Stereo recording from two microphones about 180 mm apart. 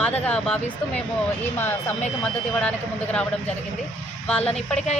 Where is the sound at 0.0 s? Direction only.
5° left (ahead or behind).